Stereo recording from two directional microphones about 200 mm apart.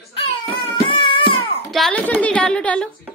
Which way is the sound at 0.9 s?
25° left (ahead or behind).